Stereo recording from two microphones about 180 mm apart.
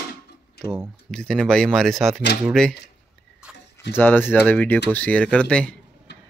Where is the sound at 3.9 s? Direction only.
10° left (ahead or behind).